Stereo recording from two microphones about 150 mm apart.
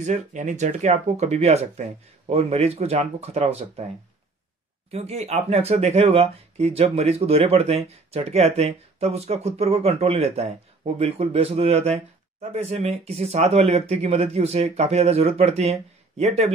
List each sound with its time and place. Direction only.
0.0 s speech: 55° right (ahead or behind)
4.9 s speech: 45° right (ahead or behind)